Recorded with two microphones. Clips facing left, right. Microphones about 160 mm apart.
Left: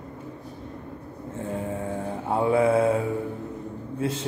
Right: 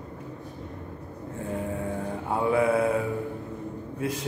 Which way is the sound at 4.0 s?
25° left (ahead or behind).